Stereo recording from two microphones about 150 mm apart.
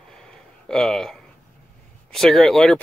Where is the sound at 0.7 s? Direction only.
Centre (ahead or behind).